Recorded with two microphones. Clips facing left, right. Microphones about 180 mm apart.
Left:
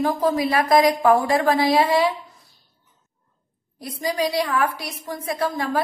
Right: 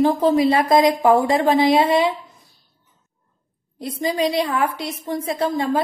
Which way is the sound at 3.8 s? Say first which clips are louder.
Right 3 dB; 25° right (ahead or behind).